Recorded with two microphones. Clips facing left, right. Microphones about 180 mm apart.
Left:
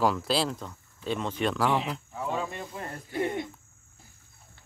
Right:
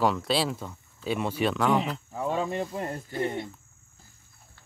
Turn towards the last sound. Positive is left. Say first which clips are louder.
# even
turn(degrees=15)  # may be behind; listen again after turning